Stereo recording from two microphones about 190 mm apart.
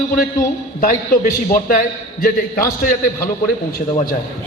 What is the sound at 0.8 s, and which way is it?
A man's voice, 45° left (ahead or behind).